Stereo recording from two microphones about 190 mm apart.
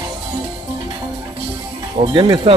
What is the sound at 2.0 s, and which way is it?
Speech, 25° right (ahead or behind).